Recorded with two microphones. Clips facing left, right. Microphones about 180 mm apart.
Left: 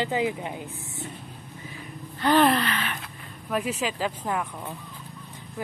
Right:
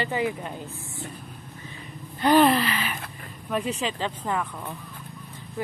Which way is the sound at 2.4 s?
5° right (ahead or behind).